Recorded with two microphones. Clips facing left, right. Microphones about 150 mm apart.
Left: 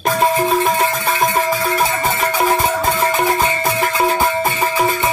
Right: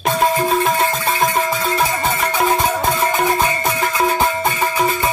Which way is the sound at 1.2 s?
25° left (ahead or behind).